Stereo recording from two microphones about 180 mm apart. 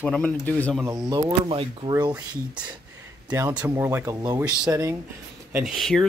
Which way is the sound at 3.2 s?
20° right (ahead or behind).